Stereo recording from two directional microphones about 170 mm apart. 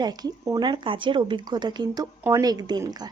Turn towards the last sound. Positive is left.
turn(degrees=-25)  # may be behind; listen again after turning